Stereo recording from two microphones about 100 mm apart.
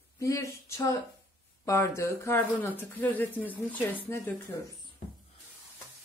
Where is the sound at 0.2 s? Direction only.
30° left (ahead or behind).